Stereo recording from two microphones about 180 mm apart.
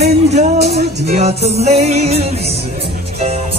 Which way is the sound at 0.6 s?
65° right (ahead or behind).